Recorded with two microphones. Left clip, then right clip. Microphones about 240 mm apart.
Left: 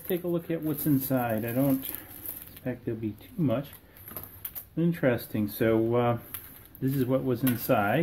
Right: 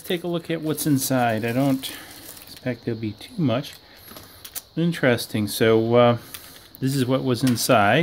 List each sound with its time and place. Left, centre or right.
0.1 s speech: right
4.7 s speech: right